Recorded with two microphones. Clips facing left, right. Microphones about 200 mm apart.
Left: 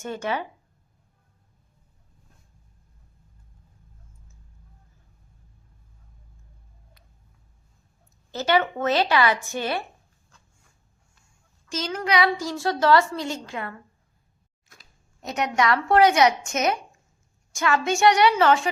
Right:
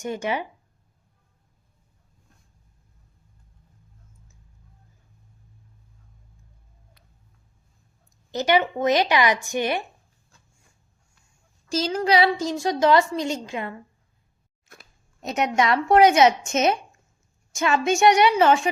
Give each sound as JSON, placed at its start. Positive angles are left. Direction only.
{"t": 0.0, "sound": "speech", "side_deg": -15}
{"t": 8.3, "sound": "speech", "side_deg": -15}
{"t": 11.7, "sound": "a woman's voice", "side_deg": -30}
{"t": 15.2, "sound": "a woman's voice", "side_deg": -20}